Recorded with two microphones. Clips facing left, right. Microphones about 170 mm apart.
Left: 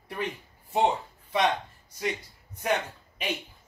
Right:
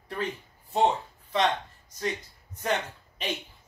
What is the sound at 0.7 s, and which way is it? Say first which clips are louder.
Speech: right 1 dB; 10° left (ahead or behind).